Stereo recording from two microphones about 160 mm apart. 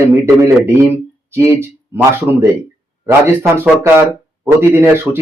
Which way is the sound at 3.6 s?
15° right (ahead or behind).